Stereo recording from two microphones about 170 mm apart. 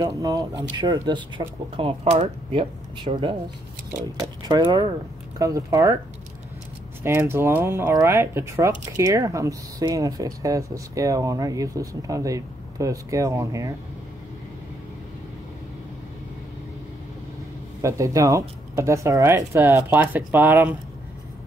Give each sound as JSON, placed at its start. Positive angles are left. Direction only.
{"t": 0.0, "sound": "speech", "side_deg": -20}
{"t": 7.0, "sound": "speech", "side_deg": -15}
{"t": 17.8, "sound": "speech", "side_deg": -20}